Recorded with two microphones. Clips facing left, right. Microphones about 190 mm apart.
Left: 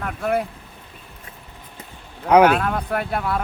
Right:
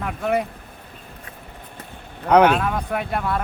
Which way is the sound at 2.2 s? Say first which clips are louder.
Left 1 dB; 5° left (ahead or behind).